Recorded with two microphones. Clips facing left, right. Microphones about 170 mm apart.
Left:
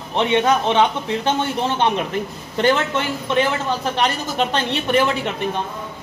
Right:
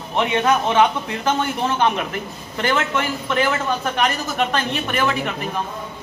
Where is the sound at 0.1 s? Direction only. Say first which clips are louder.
Left 1 dB; 30° left (ahead or behind).